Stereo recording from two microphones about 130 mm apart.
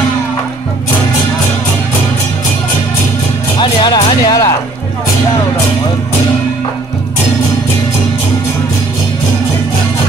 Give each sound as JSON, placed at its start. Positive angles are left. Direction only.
{"t": 3.5, "sound": "speech", "side_deg": 35}